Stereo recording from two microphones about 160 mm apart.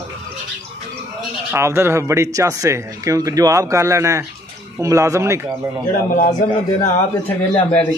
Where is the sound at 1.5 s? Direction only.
15° right (ahead or behind).